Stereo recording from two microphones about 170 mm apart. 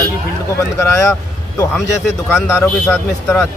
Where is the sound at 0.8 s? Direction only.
15° left (ahead or behind).